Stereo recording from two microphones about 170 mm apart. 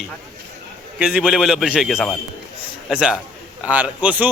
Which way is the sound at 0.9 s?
5° right (ahead or behind).